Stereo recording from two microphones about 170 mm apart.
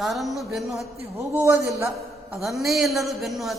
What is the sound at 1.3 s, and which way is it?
Speech, 15° right (ahead or behind).